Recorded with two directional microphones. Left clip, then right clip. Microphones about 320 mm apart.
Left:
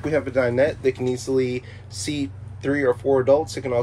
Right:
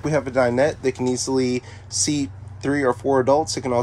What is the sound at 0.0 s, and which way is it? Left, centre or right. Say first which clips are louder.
Speech: right 1 dB; centre.